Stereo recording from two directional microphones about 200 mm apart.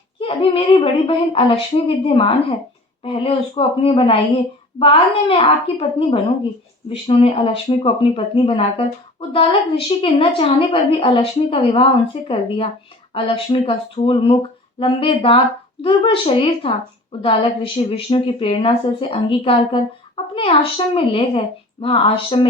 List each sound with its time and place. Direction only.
0.2 s a woman's voice: 25° left (ahead or behind)